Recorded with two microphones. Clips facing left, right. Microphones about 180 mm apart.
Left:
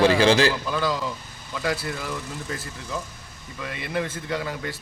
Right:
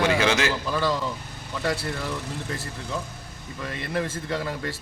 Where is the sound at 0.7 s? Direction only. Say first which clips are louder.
Even; centre (ahead or behind).